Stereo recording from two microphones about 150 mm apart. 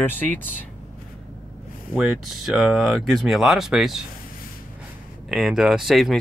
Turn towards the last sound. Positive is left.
turn(degrees=0)  # may be behind; listen again after turning